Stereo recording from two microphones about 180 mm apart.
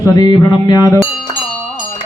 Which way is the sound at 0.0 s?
20° left (ahead or behind).